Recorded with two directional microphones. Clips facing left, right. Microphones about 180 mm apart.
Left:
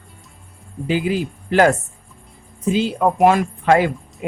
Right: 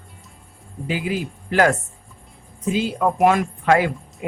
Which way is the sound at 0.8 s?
30° left (ahead or behind).